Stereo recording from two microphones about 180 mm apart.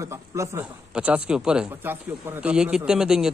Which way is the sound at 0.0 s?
15° right (ahead or behind).